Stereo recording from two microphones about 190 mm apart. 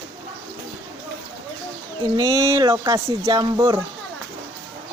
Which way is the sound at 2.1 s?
15° right (ahead or behind).